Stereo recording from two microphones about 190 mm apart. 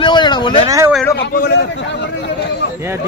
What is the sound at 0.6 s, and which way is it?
Speech, 15° right (ahead or behind).